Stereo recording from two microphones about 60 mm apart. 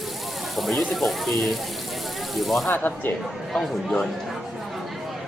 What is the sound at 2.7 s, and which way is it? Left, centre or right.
Speech, left.